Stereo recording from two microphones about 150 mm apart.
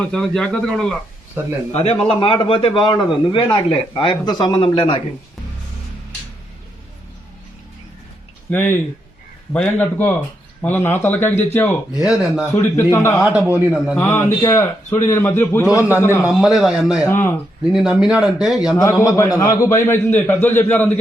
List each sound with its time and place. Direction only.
0.0 s a man's voice: 5° left (ahead or behind)
1.4 s a man's voice: 15° right (ahead or behind)
1.7 s a man's voice: 45° left (ahead or behind)
8.4 s a man's voice: 15° left (ahead or behind)
11.9 s a man's voice: 5° right (ahead or behind)
12.5 s a man's voice: 15° left (ahead or behind)
16.3 s a man's voice: centre (ahead or behind)
17.1 s a man's voice: 15° left (ahead or behind)
17.6 s a man's voice: 5° right (ahead or behind)
18.8 s a man's voice: 20° left (ahead or behind)